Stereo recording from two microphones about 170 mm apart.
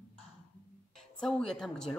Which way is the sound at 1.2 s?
5° left (ahead or behind).